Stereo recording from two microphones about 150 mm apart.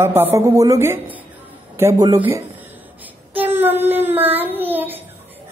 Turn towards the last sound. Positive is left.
turn(degrees=-15)  # may be behind; listen again after turning